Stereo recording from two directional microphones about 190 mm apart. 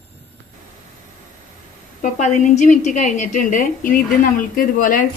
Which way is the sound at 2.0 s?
40° left (ahead or behind).